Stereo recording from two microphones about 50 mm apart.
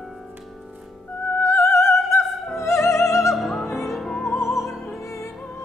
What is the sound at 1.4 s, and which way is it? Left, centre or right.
Opera, left.